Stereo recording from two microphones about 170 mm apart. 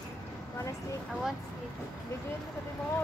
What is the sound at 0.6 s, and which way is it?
Speech, 20° left (ahead or behind).